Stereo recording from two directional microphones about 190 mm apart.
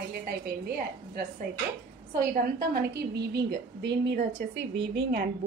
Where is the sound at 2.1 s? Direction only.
50° right (ahead or behind).